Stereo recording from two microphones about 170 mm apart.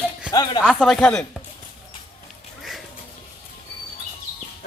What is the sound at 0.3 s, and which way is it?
Speech, 25° left (ahead or behind).